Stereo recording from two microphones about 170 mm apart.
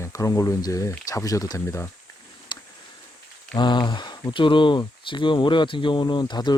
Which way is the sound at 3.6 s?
25° left (ahead or behind).